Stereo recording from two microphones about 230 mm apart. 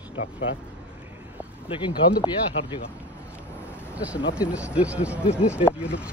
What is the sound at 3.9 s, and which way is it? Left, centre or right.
Speech, centre.